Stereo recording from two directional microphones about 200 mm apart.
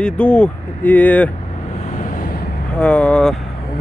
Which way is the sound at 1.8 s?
40° left (ahead or behind).